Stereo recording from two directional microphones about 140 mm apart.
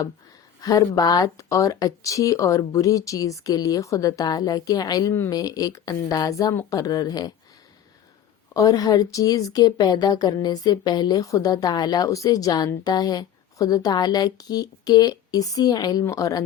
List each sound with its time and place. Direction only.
0.6 s speech: 25° left (ahead or behind)
8.5 s speech: 25° left (ahead or behind)